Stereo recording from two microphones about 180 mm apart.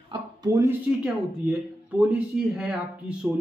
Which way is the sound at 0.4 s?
15° right (ahead or behind).